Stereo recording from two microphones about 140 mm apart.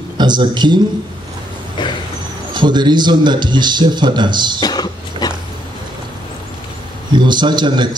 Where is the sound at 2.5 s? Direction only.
30° right (ahead or behind).